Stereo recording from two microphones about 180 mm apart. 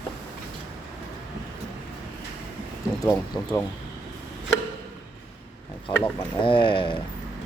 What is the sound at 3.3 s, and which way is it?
Speech, 20° left (ahead or behind).